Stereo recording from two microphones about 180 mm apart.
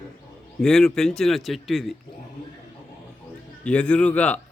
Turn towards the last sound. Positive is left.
turn(degrees=5)  # may be behind; listen again after turning